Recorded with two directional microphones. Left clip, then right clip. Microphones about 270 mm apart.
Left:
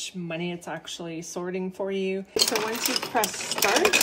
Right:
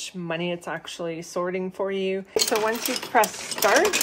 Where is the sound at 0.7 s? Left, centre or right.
Right.